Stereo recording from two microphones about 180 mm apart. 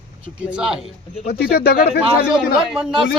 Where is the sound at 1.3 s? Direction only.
60° left (ahead or behind).